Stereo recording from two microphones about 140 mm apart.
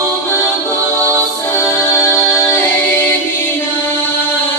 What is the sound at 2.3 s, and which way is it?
Music, 15° left (ahead or behind).